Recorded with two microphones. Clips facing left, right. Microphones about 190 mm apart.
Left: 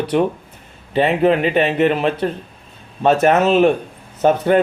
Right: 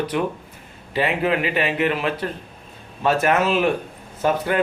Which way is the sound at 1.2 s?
30° left (ahead or behind).